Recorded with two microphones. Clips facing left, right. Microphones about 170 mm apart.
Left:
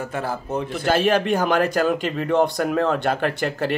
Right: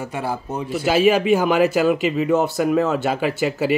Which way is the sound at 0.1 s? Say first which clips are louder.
Even; 10° right (ahead or behind).